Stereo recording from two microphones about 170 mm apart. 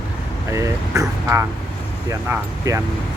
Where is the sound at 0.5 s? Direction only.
15° right (ahead or behind).